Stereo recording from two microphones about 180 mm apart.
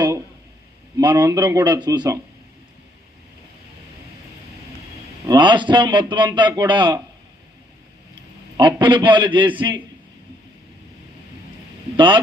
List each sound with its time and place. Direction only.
0.9 s a man's voice: 25° right (ahead or behind)
5.2 s a man's voice: 25° right (ahead or behind)
8.5 s a man's voice: 25° right (ahead or behind)
11.9 s a man's voice: 25° right (ahead or behind)